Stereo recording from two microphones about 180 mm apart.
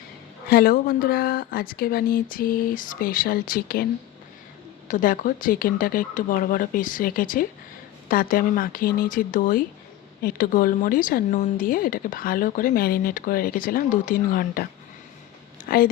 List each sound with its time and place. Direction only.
0.5 s speech: 55° left (ahead or behind)
4.9 s speech: 50° left (ahead or behind)